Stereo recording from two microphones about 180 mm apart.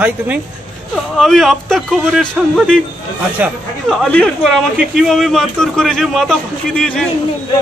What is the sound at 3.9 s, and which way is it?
Speech, 5° left (ahead or behind).